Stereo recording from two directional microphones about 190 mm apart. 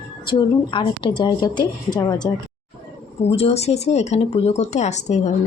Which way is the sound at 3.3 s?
30° left (ahead or behind).